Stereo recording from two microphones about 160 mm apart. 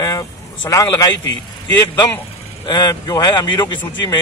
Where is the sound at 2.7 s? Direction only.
25° left (ahead or behind).